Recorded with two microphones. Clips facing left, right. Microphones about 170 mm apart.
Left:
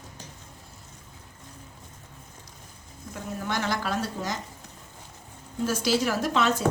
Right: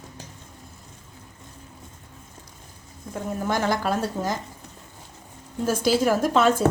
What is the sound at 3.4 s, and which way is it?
Speech, 45° right (ahead or behind).